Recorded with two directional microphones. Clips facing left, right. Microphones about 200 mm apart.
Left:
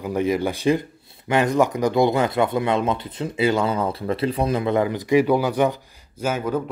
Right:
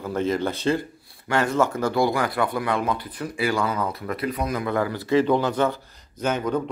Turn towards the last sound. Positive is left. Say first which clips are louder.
# even
turn(degrees=5)  # may be behind; listen again after turning